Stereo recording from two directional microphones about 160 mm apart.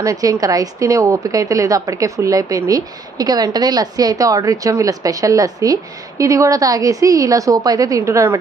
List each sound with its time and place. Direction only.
0.0 s a woman's voice: 20° right (ahead or behind)